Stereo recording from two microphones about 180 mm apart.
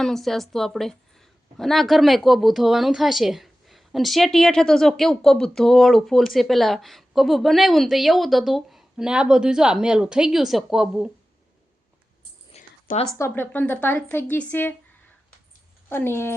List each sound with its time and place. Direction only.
0.0 s a woman's voice: centre (ahead or behind)
12.5 s a sound: 35° left (ahead or behind)
13.1 s a woman's voice: 15° left (ahead or behind)
15.9 s a woman's voice: 10° left (ahead or behind)